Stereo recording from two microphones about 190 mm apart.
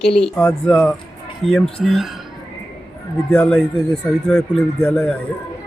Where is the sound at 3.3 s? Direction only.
5° left (ahead or behind).